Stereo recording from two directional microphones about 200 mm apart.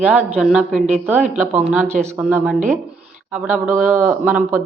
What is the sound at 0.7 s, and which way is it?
Speech, 35° right (ahead or behind).